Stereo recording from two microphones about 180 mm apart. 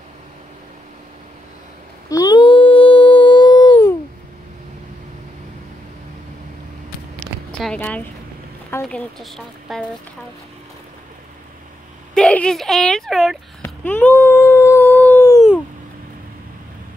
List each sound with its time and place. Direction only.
2.0 s a sound: 20° left (ahead or behind)
7.5 s speech: 5° left (ahead or behind)
12.1 s speech: 5° left (ahead or behind)
13.7 s dog: 10° left (ahead or behind)